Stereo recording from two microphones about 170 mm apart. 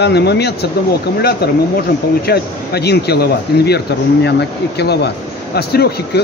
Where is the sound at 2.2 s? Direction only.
70° left (ahead or behind).